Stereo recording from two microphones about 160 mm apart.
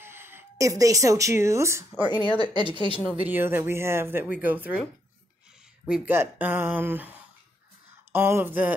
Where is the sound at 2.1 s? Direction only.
30° left (ahead or behind).